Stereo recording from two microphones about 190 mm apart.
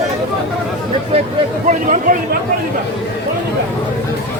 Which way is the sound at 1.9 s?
45° right (ahead or behind).